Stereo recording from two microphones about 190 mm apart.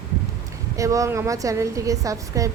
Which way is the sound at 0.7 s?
15° right (ahead or behind).